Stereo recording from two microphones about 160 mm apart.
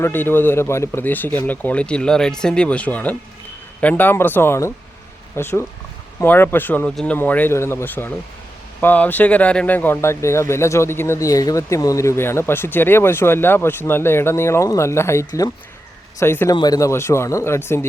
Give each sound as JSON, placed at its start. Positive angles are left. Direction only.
{"t": 0.0, "sound": "speech", "side_deg": 15}